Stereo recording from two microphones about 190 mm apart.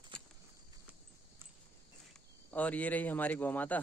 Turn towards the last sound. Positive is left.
turn(degrees=10)  # may be behind; listen again after turning